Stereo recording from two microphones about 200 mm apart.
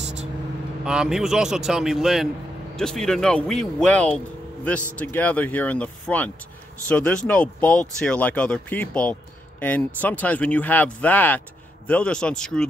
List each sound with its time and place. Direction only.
0.0 s vehicle: 35° right (ahead or behind)
0.8 s speech: 5° right (ahead or behind)